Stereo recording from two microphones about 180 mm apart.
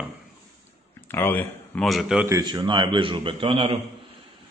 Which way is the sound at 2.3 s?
25° right (ahead or behind).